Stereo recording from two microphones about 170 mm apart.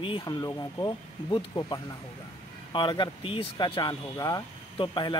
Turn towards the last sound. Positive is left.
turn(degrees=25)  # may be behind; listen again after turning